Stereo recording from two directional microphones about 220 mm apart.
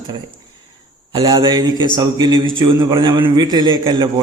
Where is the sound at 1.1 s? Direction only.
20° right (ahead or behind).